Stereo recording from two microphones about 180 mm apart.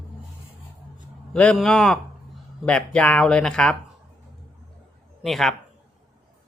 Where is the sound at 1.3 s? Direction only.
5° left (ahead or behind).